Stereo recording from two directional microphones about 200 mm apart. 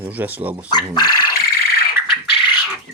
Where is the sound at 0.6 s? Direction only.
20° left (ahead or behind).